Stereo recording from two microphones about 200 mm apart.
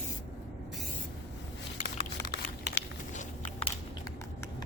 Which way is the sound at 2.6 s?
40° left (ahead or behind).